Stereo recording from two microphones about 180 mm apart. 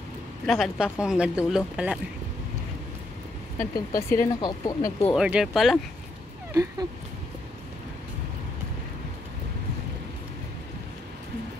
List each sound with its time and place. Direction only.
0.5 s speech: centre (ahead or behind)
3.7 s speech: 15° left (ahead or behind)
5.1 s speech: 5° right (ahead or behind)
6.5 s a sound: 15° right (ahead or behind)